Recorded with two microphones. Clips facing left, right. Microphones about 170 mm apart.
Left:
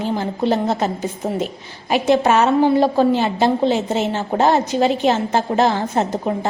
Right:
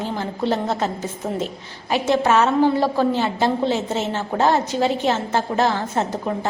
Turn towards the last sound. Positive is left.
turn(degrees=20)  # may be behind; listen again after turning